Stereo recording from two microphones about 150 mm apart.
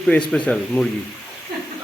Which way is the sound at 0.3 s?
5° left (ahead or behind).